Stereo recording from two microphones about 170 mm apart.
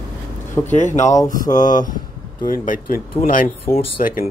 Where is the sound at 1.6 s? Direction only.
50° left (ahead or behind).